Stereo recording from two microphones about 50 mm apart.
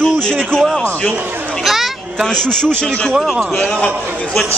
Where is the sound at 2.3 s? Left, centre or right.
Centre.